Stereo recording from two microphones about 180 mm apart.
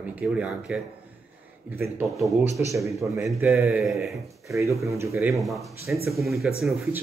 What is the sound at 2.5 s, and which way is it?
Speech, 15° right (ahead or behind).